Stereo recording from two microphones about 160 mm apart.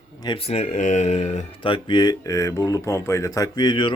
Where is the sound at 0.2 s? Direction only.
30° left (ahead or behind).